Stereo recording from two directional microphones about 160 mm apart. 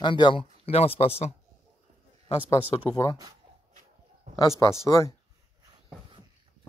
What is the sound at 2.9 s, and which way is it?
Speech, 25° left (ahead or behind).